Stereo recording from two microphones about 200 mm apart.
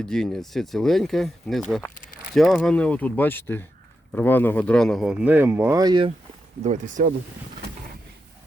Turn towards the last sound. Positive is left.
turn(degrees=-40)  # may be behind; listen again after turning